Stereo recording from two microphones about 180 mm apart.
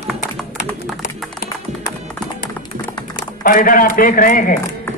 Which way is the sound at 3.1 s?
50° left (ahead or behind).